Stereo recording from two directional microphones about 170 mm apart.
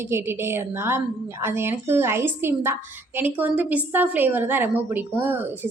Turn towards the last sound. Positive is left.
turn(degrees=-10)  # may be behind; listen again after turning